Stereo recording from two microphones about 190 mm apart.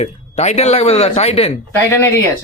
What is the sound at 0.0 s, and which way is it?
A man's voice, 35° left (ahead or behind).